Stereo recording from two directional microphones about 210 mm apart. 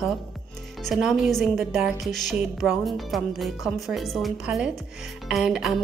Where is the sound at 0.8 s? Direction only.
Centre (ahead or behind).